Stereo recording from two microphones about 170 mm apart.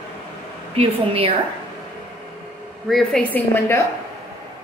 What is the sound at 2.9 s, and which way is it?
Speech, 5° left (ahead or behind).